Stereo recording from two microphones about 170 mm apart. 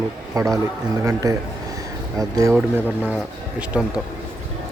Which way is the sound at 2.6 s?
5° right (ahead or behind).